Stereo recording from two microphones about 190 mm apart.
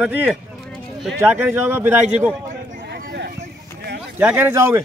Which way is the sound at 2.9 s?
55° right (ahead or behind).